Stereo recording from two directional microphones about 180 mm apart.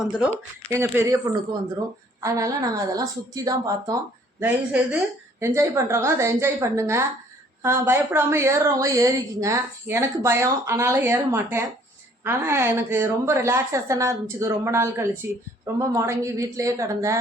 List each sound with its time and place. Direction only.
0.0 s speech: 5° right (ahead or behind)
0.7 s a woman's voice: 15° right (ahead or behind)
4.4 s a woman's voice: 10° right (ahead or behind)